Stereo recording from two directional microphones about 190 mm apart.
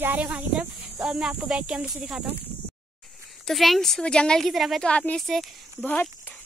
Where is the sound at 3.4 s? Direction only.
Centre (ahead or behind).